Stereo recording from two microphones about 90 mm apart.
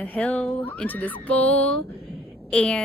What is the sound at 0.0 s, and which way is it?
A woman's voice, 15° left (ahead or behind).